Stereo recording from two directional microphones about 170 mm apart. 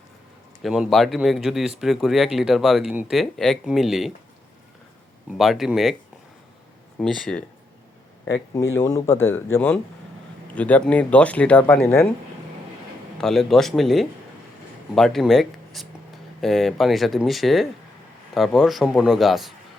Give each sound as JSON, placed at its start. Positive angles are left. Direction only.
{"t": 0.6, "sound": "speech", "side_deg": 0}
{"t": 5.4, "sound": "speech", "side_deg": 0}
{"t": 7.0, "sound": "speech", "side_deg": 0}
{"t": 8.5, "sound": "speech", "side_deg": 15}
{"t": 13.1, "sound": "speech", "side_deg": 0}